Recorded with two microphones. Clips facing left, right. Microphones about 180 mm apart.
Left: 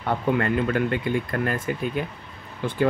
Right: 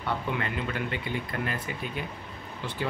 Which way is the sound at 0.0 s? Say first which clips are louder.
Left 8 dB; 50° left (ahead or behind).